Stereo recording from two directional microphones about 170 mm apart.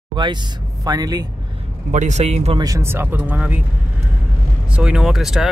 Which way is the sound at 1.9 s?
45° right (ahead or behind).